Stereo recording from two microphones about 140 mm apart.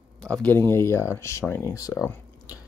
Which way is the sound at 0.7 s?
20° left (ahead or behind).